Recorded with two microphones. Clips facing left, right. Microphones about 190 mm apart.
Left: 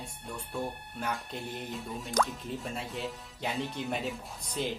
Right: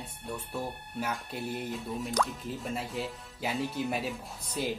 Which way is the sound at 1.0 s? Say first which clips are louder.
Right 1 dB; 5° right (ahead or behind).